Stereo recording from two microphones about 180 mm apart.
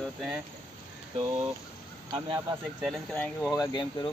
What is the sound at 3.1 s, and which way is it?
Speech, 5° left (ahead or behind).